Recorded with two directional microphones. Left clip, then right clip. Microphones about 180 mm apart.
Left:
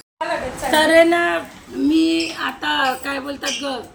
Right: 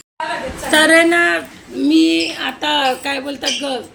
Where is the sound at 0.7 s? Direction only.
5° right (ahead or behind).